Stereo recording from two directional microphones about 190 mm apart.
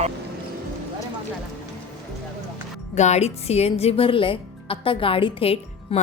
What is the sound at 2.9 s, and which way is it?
Speech, 35° left (ahead or behind).